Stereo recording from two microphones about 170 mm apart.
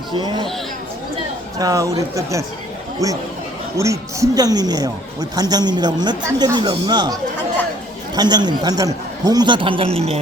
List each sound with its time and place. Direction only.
0.1 s speech: 25° right (ahead or behind)
1.5 s speech: 20° right (ahead or behind); by 10.2 s 35° right (ahead or behind)